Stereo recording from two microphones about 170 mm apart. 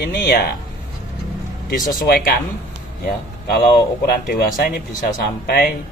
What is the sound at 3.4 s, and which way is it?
Speech, 65° left (ahead or behind).